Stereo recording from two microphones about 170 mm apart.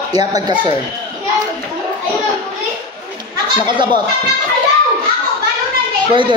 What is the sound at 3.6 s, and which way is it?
Speech, 30° right (ahead or behind).